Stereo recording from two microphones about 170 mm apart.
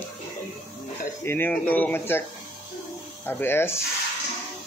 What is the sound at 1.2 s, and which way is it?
Speech, 10° left (ahead or behind).